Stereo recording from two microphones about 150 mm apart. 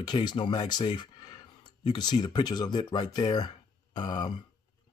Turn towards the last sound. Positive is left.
turn(degrees=30)  # may be behind; listen again after turning